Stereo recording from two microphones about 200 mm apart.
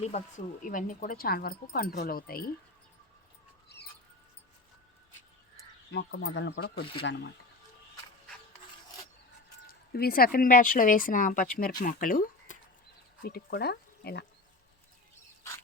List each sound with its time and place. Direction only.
0.0 s speech: 35° left (ahead or behind)
5.9 s speech: 65° left (ahead or behind)
9.6 s speech: 50° left (ahead or behind)